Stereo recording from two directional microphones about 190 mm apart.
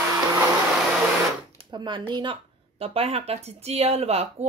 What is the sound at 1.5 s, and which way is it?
Speech, 25° right (ahead or behind).